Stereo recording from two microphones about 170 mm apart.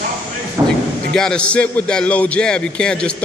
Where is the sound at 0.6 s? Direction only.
20° right (ahead or behind).